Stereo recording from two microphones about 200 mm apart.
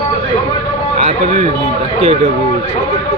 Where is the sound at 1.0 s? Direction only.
35° right (ahead or behind).